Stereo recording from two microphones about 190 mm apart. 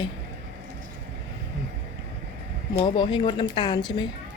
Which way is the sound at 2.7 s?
25° left (ahead or behind).